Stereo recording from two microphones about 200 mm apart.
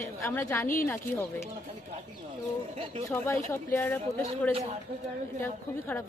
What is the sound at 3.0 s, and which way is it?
Speech, 10° left (ahead or behind).